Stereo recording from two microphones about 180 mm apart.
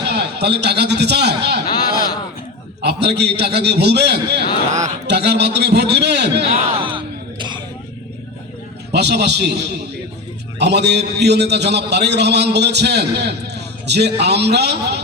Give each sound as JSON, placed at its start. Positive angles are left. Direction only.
{"t": 0.1, "sound": "a man's voice", "side_deg": -65}
{"t": 6.4, "sound": "music", "side_deg": -30}
{"t": 8.9, "sound": "a man's voice", "side_deg": -65}
{"t": 10.6, "sound": "a man's voice", "side_deg": -70}